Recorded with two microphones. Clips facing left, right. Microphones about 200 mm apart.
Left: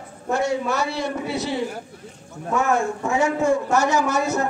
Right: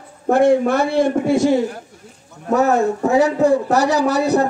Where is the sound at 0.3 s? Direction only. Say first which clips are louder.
Right 9 dB; 55° right (ahead or behind).